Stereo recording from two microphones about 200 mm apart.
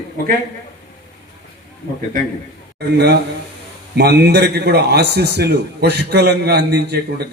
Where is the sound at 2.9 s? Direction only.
55° right (ahead or behind).